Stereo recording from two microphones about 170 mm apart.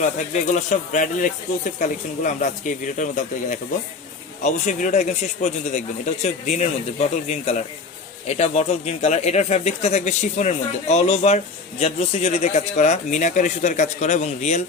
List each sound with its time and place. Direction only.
0.5 s speech: 50° left (ahead or behind)